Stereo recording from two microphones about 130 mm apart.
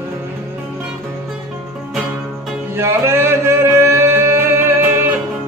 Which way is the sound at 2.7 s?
20° right (ahead or behind).